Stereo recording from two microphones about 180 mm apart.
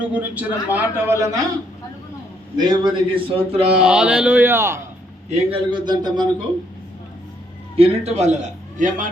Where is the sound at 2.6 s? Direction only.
25° right (ahead or behind).